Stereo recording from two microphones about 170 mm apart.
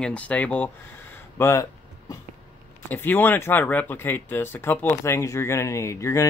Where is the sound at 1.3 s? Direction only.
15° left (ahead or behind).